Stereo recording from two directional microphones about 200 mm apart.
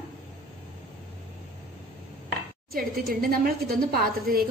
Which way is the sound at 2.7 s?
45° right (ahead or behind).